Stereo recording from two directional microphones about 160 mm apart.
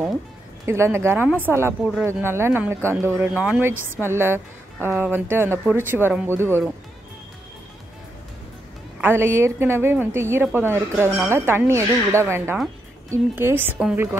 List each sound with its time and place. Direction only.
0.7 s speech: 15° right (ahead or behind)
9.0 s speech: 15° right (ahead or behind)